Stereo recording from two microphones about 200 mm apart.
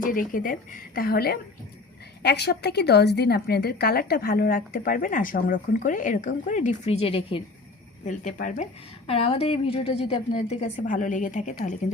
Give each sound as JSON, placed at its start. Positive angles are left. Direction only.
{"t": 0.0, "sound": "a woman's voice", "side_deg": 45}
{"t": 8.0, "sound": "a woman's voice", "side_deg": 40}